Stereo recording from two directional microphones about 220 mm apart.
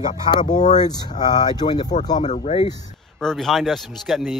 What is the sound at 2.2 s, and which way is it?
Speech, 30° left (ahead or behind).